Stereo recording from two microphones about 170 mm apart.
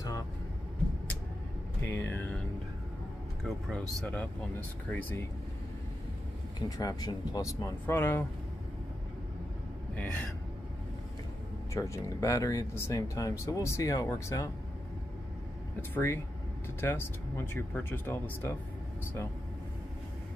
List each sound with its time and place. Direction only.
1.8 s a sound: 10° left (ahead or behind)
3.4 s speech: centre (ahead or behind)
6.8 s speech: 20° left (ahead or behind)
9.9 s speech: 10° left (ahead or behind)
11.7 s speech: 20° left (ahead or behind)
15.9 s speech: 15° left (ahead or behind)